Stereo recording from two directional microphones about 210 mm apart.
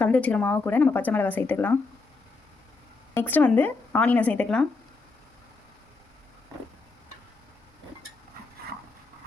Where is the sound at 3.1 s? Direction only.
10° left (ahead or behind).